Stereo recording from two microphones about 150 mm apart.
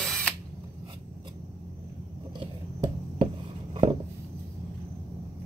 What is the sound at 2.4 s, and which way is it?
Chopping, 35° right (ahead or behind).